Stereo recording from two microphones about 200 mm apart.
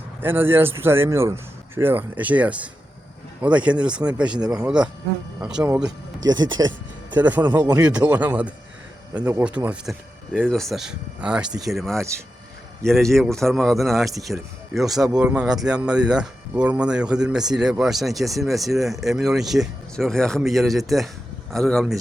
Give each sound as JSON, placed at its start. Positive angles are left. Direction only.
{"t": 0.2, "sound": "speech", "side_deg": -10}
{"t": 4.4, "sound": "speech", "side_deg": -20}
{"t": 5.5, "sound": "speech", "side_deg": -5}
{"t": 6.5, "sound": "speech", "side_deg": -20}
{"t": 7.1, "sound": "speech", "side_deg": -10}
{"t": 7.8, "sound": "speech", "side_deg": -5}